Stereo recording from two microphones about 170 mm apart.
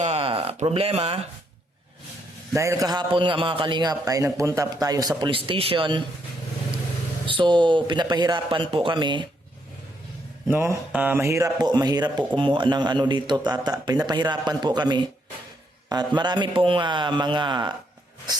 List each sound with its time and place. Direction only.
0.0 s speech: 35° right (ahead or behind)
2.5 s a man's voice: 20° right (ahead or behind)
7.3 s a man's voice: 30° right (ahead or behind)
10.5 s a man's voice: 15° right (ahead or behind)